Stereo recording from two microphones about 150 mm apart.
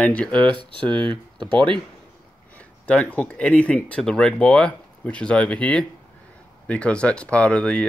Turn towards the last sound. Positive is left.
turn(degrees=5)  # may be behind; listen again after turning